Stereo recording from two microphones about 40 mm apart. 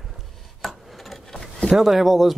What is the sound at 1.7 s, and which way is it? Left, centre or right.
Speech, centre.